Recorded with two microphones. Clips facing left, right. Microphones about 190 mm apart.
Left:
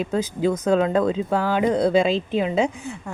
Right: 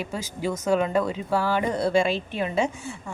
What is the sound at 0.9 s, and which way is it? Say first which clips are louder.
Speech: left 4 dB; 20° left (ahead or behind).